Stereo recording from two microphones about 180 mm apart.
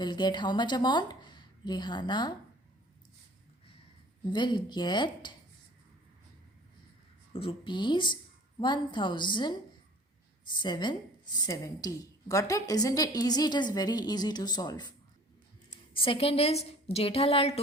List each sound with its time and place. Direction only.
0.0 s a woman's voice: 25° left (ahead or behind)
4.3 s a woman's voice: 25° left (ahead or behind)
7.3 s a woman's voice: 30° left (ahead or behind)
15.9 s a woman's voice: 30° left (ahead or behind)